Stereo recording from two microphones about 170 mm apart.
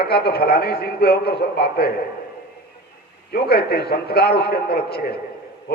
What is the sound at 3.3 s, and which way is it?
A man's voice, 65° left (ahead or behind).